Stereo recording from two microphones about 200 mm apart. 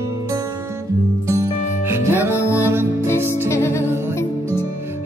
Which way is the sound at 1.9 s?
10° right (ahead or behind).